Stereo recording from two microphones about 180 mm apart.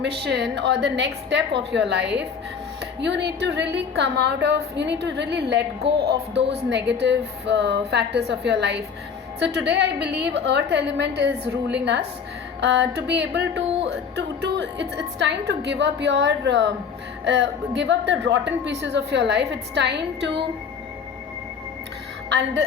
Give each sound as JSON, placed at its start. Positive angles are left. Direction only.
{"t": 0.3, "sound": "a woman's voice", "side_deg": -70}